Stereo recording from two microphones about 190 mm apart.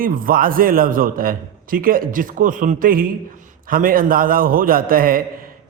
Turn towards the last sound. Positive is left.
turn(degrees=-50)  # may be behind; listen again after turning